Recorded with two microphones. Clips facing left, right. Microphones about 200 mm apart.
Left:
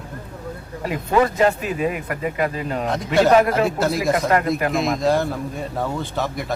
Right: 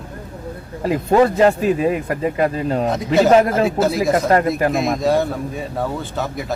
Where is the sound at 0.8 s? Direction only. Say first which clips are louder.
Right 5 dB; 35° right (ahead or behind).